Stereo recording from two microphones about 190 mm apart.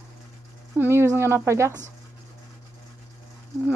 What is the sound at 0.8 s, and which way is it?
Speech, 15° right (ahead or behind).